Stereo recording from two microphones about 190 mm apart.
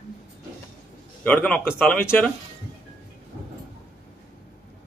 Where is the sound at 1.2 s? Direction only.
5° left (ahead or behind).